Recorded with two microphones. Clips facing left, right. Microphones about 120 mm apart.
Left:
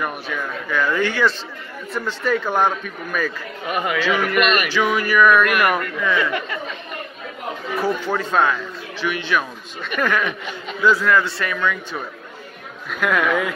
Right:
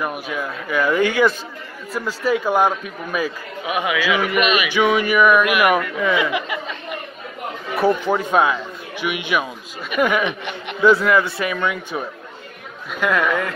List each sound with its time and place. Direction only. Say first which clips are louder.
0.0 s a man's voice: right 1 dB; 5° right (ahead or behind)
4.7 s a man's voice: right 3 dB; 15° right (ahead or behind)
5.9 s a man's voice: right 2 dB; 15° right (ahead or behind)
7.8 s a man's voice: right 5 dB; 15° right (ahead or behind)
10.8 s speech: right 2 dB; 20° right (ahead or behind)
13.0 s a man's voice: even; centre (ahead or behind)